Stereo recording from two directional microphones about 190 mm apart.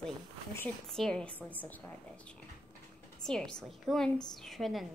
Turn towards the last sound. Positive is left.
turn(degrees=0)  # may be behind; listen again after turning